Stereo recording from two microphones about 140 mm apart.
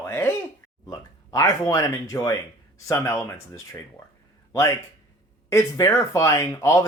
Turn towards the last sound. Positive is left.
turn(degrees=20)  # may be behind; listen again after turning